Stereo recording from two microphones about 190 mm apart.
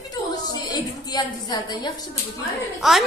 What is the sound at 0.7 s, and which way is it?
A woman's voice, 20° left (ahead or behind).